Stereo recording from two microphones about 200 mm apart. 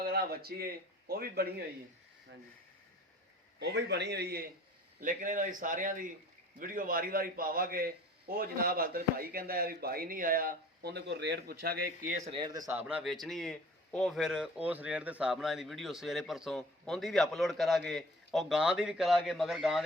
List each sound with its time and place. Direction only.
0.0 s speech: 50° right (ahead or behind)
3.6 s a man's voice: 55° right (ahead or behind)
4.9 s a man's voice: 40° right (ahead or behind)
12.4 s speech: 20° right (ahead or behind)
12.7 s speech: 5° right (ahead or behind)